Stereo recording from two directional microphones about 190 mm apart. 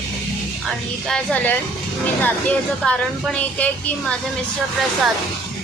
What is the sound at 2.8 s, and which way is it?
Child singing, 5° left (ahead or behind).